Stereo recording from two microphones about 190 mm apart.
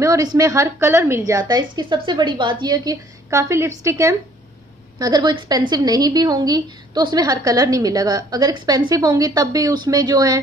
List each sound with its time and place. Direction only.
0.0 s a woman's voice: 20° right (ahead or behind)